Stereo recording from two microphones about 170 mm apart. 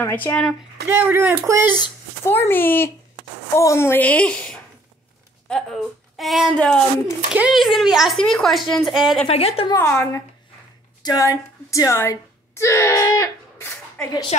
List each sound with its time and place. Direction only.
0.0 s a woman's voice: 10° left (ahead or behind)
0.8 s speech: 15° right (ahead or behind)
2.2 s a woman's voice: 15° left (ahead or behind)
9.3 s a woman's voice: 35° left (ahead or behind)
9.8 s a woman's voice: 15° left (ahead or behind)